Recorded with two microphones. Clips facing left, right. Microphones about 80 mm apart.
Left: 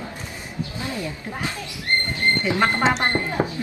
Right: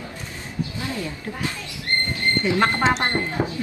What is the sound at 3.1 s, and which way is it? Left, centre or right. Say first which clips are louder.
Speech: left 1 dB; centre.